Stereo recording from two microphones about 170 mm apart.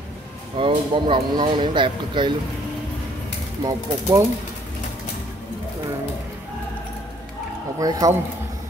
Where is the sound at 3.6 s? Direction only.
20° right (ahead or behind).